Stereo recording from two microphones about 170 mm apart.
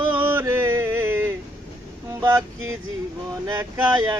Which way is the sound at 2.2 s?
15° right (ahead or behind).